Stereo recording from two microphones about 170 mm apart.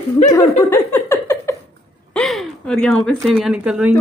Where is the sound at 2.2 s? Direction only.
Centre (ahead or behind).